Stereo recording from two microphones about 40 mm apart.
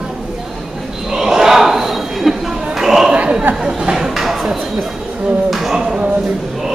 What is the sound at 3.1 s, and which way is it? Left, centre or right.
Chatter, right.